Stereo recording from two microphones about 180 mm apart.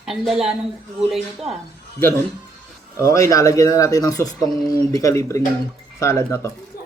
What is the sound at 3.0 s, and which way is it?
Speech, 15° left (ahead or behind).